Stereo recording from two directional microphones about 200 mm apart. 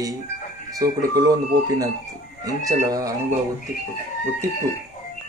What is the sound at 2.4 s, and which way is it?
Speech, 15° right (ahead or behind).